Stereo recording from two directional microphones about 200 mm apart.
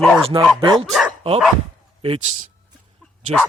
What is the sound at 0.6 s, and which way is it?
Speech, 25° right (ahead or behind).